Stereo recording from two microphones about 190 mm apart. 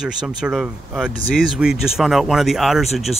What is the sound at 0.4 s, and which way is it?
Speech, 5° right (ahead or behind).